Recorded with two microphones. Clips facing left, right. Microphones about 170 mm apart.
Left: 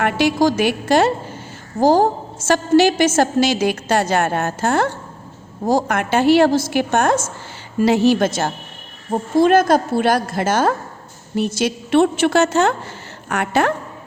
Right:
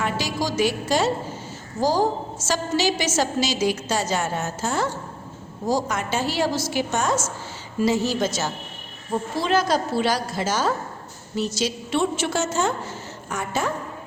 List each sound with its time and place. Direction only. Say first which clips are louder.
0.0 s a woman's voice: left 9 dB; 60° left (ahead or behind)